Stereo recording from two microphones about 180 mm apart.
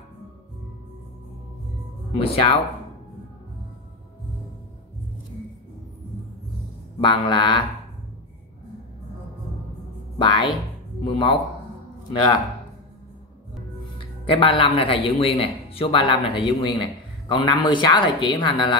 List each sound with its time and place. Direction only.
2.1 s speech: 30° left (ahead or behind)
7.0 s speech: 30° left (ahead or behind)
10.1 s speech: 30° left (ahead or behind)
13.9 s speech: 30° left (ahead or behind)